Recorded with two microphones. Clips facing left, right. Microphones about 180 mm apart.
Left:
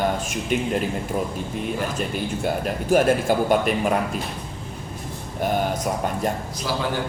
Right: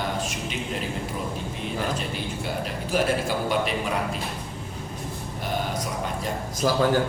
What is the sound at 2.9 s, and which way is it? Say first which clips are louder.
Speech: left 6 dB; 50° left (ahead or behind).